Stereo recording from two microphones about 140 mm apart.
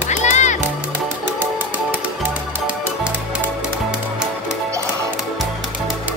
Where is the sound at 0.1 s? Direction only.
55° left (ahead or behind).